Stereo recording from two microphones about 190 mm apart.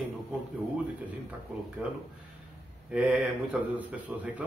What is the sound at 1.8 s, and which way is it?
Speech, 5° right (ahead or behind).